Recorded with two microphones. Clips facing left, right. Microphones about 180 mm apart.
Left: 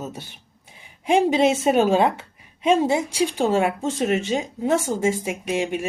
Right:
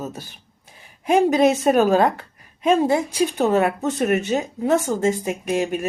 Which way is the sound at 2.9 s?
10° left (ahead or behind).